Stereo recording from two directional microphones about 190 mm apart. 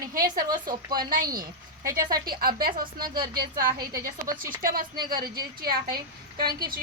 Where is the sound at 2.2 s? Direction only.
50° right (ahead or behind).